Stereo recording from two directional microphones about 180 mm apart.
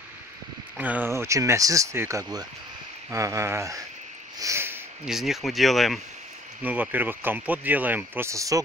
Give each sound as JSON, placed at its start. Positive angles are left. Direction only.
{"t": 0.7, "sound": "speech", "side_deg": -10}
{"t": 5.0, "sound": "speech", "side_deg": 0}